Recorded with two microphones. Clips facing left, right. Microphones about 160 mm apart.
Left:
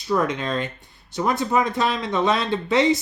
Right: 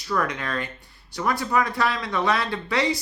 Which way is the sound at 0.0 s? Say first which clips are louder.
Left 4 dB; 20° left (ahead or behind).